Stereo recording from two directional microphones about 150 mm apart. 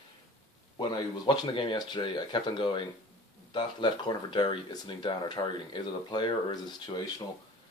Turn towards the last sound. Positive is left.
turn(degrees=30)  # may be behind; listen again after turning